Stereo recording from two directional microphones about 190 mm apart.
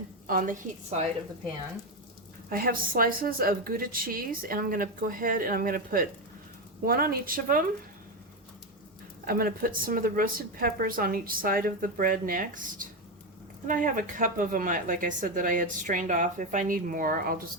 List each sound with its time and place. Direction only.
0.3 s speech: 45° right (ahead or behind)
2.5 s speech: 50° right (ahead or behind)
9.2 s speech: 50° right (ahead or behind)